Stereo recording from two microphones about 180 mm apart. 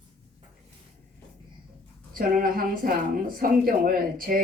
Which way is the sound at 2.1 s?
50° right (ahead or behind).